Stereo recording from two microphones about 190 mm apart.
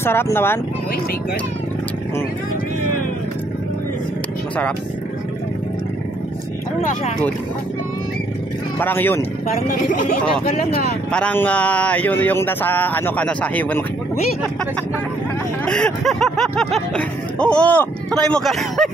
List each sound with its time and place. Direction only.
0.0 s speech: 10° left (ahead or behind)
8.7 s speech: 10° left (ahead or behind)
9.7 s speech: 45° left (ahead or behind)
11.1 s speech: 5° left (ahead or behind)
15.6 s speech: 5° left (ahead or behind)